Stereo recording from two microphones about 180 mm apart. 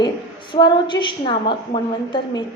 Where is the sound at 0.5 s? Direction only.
25° left (ahead or behind).